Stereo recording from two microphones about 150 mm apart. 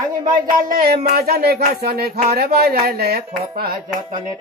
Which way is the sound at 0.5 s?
70° right (ahead or behind).